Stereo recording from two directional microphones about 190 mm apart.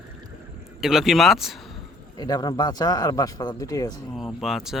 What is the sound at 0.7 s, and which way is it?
Speech, centre (ahead or behind).